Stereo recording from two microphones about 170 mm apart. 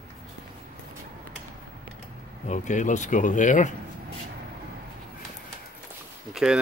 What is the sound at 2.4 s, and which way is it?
Speech, 45° left (ahead or behind).